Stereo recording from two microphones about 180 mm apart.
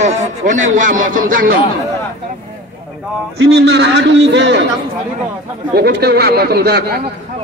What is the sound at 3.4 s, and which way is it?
A man's voice, 80° right.